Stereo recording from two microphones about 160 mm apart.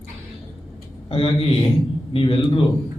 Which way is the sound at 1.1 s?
35° left (ahead or behind).